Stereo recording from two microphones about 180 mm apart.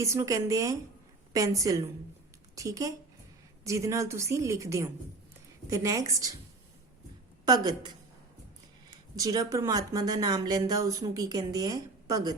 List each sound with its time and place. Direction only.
0.0 s a woman's voice: 15° right (ahead or behind)
7.4 s speech: 20° right (ahead or behind)
9.1 s speech: 20° right (ahead or behind)